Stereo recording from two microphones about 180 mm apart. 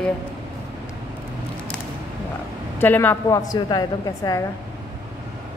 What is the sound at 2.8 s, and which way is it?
A woman's voice, 10° left (ahead or behind).